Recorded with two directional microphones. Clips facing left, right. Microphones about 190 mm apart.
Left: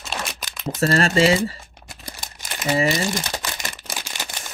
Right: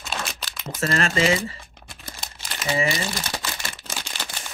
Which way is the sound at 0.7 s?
40° left (ahead or behind).